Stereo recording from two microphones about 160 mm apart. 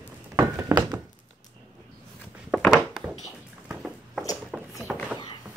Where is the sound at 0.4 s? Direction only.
20° right (ahead or behind).